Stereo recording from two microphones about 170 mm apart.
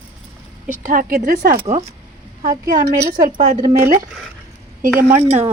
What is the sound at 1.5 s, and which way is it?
Speech, 35° right (ahead or behind).